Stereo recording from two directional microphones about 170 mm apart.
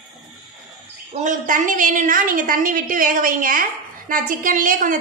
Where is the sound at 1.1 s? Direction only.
50° right (ahead or behind).